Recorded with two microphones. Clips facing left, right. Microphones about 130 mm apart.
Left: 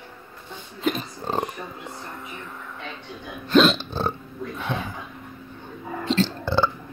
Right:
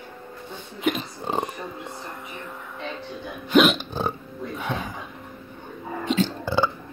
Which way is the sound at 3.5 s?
15° right (ahead or behind).